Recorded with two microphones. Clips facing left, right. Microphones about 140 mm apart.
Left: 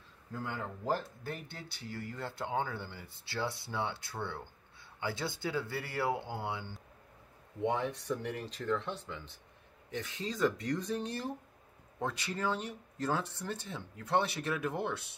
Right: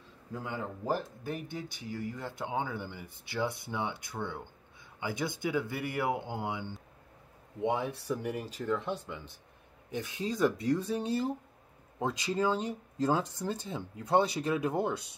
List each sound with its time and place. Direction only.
0.3 s speech: 10° right (ahead or behind)